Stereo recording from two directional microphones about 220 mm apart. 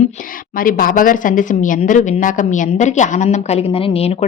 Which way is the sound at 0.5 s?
40° left (ahead or behind).